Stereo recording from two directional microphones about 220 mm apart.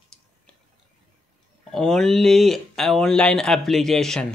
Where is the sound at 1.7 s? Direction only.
Centre (ahead or behind).